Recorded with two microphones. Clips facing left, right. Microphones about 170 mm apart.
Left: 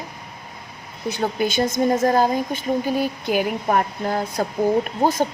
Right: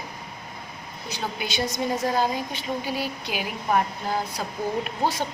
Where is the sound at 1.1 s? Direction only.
50° left (ahead or behind).